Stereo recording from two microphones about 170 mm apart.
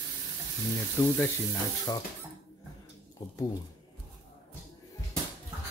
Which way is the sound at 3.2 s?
25° left (ahead or behind).